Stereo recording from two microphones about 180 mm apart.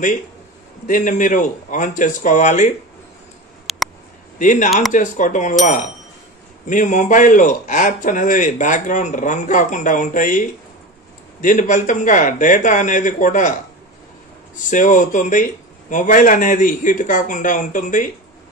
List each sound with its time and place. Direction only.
0.8 s a man's voice: 45° left (ahead or behind)
3.7 s a sound: centre (ahead or behind)
4.4 s a man's voice: 45° left (ahead or behind)
6.7 s a man's voice: 45° left (ahead or behind)
11.4 s a man's voice: 45° left (ahead or behind)
14.7 s a man's voice: 45° left (ahead or behind)